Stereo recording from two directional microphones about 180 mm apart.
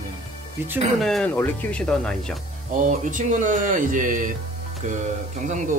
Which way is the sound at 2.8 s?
45° right (ahead or behind).